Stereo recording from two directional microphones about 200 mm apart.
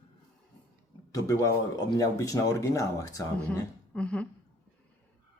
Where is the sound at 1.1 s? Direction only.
15° left (ahead or behind).